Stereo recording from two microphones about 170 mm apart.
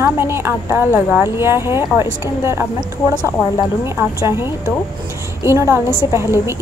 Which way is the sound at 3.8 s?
15° right (ahead or behind).